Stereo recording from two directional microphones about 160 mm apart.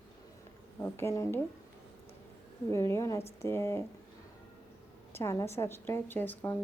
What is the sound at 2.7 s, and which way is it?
A woman's voice, 15° left (ahead or behind).